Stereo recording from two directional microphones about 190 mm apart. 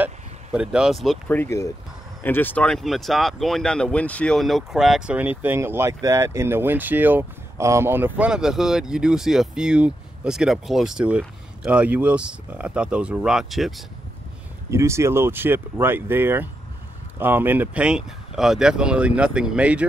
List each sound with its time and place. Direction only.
0.0 s speech: 5° right (ahead or behind)
1.4 s speech: 15° left (ahead or behind); by 13.8 s centre (ahead or behind)
14.7 s speech: 15° right (ahead or behind)